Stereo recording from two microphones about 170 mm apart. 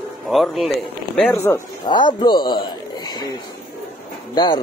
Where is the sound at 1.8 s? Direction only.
25° left (ahead or behind).